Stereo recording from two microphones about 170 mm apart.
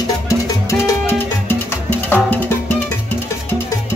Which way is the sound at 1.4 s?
10° left (ahead or behind).